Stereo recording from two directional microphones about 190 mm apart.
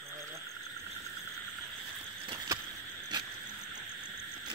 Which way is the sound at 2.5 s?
15° right (ahead or behind).